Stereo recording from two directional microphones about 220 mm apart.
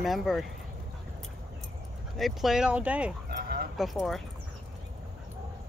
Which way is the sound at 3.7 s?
Centre (ahead or behind).